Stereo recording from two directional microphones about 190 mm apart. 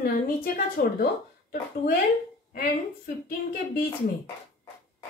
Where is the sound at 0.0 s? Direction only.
50° left (ahead or behind).